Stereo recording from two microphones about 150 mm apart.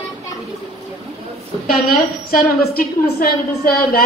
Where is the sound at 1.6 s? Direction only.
80° left.